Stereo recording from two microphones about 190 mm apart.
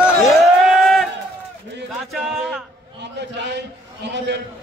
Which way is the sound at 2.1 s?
5° right (ahead or behind).